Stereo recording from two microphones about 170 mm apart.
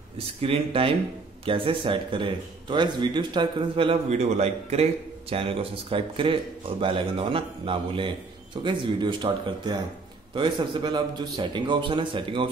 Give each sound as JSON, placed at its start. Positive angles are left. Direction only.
{"t": 0.4, "sound": "a man's voice", "side_deg": -35}